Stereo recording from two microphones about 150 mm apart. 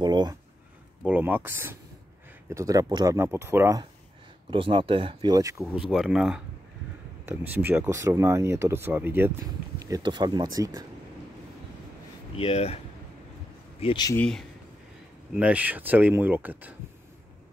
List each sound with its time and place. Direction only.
0.0 s speech: 30° right (ahead or behind)
1.0 s speech: 10° right (ahead or behind)
4.5 s speech: 35° right (ahead or behind)
5.8 s speech: 5° right (ahead or behind)
9.8 s speech: 25° right (ahead or behind)
12.4 s speech: 45° left (ahead or behind)
14.1 s speech: 5° left (ahead or behind)
15.3 s speech: 10° right (ahead or behind)